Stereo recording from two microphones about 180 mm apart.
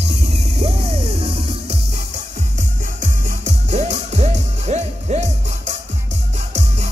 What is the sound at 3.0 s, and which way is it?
Music, 40° right (ahead or behind).